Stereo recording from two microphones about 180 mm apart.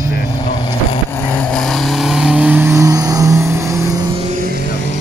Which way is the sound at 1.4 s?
Centre (ahead or behind).